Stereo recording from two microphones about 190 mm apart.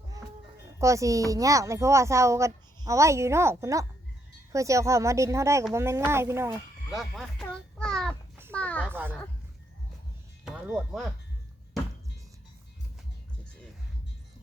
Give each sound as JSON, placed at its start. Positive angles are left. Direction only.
{"t": 0.8, "sound": "speech", "side_deg": -15}
{"t": 6.9, "sound": "speech", "side_deg": 0}
{"t": 7.4, "sound": "child singing", "side_deg": 5}
{"t": 8.5, "sound": "a sound", "side_deg": 5}
{"t": 8.8, "sound": "speech", "side_deg": -10}